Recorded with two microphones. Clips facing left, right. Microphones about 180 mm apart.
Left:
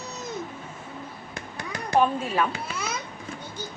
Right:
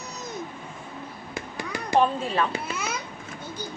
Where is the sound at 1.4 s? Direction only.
5° right (ahead or behind).